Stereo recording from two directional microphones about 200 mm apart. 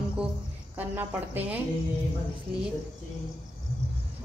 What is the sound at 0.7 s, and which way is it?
Speech, 10° right (ahead or behind).